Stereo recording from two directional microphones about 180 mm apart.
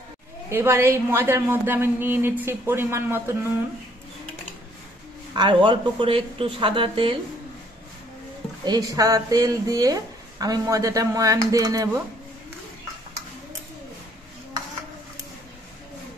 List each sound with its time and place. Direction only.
0.5 s a woman's voice: 15° right (ahead or behind)
5.3 s speech: 25° right (ahead or behind)
8.6 s speech: 20° right (ahead or behind)